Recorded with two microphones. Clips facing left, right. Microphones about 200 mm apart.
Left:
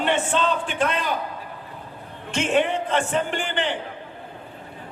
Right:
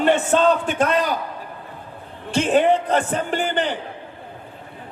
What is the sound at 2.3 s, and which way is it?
A man's voice, 35° right (ahead or behind).